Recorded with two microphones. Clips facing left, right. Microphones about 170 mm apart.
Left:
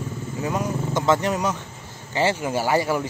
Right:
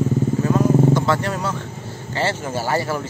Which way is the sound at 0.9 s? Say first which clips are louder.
Right 1 dB; 20° left (ahead or behind).